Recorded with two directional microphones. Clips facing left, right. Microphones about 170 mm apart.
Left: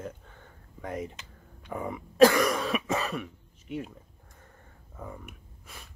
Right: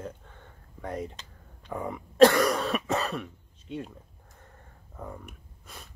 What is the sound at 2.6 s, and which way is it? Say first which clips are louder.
Throat clearing: right 1 dB; 5° left (ahead or behind).